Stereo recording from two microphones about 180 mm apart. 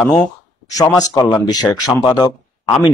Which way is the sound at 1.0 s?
20° left (ahead or behind).